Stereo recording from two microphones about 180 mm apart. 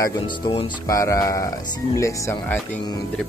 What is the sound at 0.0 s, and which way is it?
Speech, 20° left (ahead or behind).